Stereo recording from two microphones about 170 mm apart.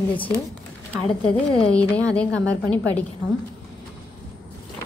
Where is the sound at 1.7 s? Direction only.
5° left (ahead or behind).